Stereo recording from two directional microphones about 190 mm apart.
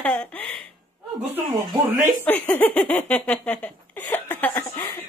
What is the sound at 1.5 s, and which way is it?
Speech, 20° right (ahead or behind).